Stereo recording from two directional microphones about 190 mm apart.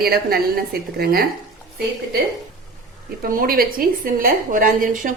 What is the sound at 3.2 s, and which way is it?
A woman's voice, 50° right (ahead or behind).